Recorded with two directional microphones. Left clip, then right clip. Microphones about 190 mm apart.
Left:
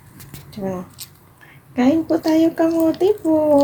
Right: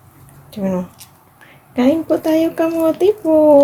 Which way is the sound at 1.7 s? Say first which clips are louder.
Right 2 dB; 30° right (ahead or behind).